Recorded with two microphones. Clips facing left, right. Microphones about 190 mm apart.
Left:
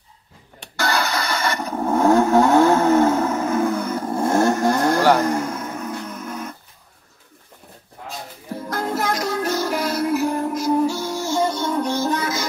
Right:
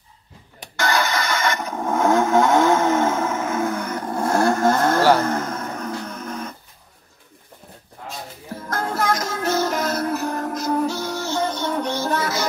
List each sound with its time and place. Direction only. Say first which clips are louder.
0.7 s vehicle: right 1 dB; 35° left (ahead or behind); by 6.4 s 10° left (ahead or behind)
8.6 s music: right 1 dB; 15° left (ahead or behind)